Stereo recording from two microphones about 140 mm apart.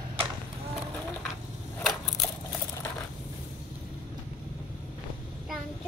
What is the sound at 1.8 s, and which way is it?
Crushing, centre (ahead or behind).